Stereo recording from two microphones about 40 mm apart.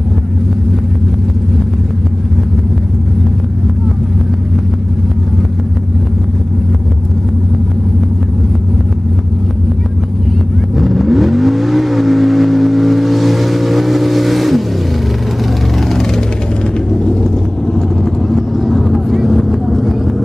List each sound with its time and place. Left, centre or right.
10.8 s vehicle: centre
16.9 s vehicle: left
17.7 s vehicle: centre